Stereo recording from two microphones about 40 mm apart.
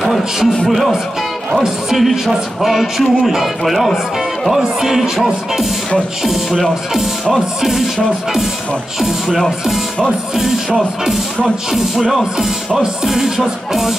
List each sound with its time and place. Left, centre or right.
0.0 s a man's voice: centre
1.5 s music: centre
2.0 s speech: centre
4.5 s music: centre
7.6 s speech: centre
10.3 s music: centre
12.0 s speech: centre
12.8 s music: centre
13.4 s speech: centre